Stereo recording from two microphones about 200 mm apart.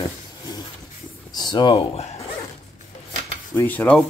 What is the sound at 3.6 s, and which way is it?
Speech, 10° left (ahead or behind).